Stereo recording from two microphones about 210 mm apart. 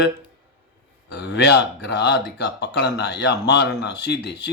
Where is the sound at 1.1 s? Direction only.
55° left (ahead or behind).